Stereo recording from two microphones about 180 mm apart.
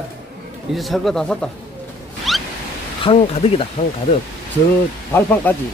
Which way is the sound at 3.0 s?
35° left (ahead or behind).